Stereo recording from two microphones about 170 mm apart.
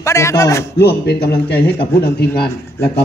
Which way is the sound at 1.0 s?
70° left (ahead or behind).